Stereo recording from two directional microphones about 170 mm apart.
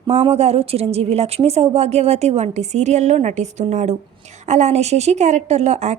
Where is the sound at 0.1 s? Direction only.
35° right (ahead or behind).